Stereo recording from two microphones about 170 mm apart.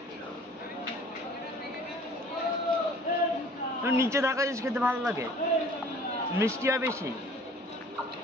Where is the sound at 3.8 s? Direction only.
15° right (ahead or behind).